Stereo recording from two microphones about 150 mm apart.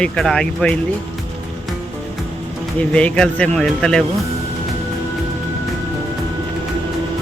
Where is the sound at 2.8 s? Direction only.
10° left (ahead or behind).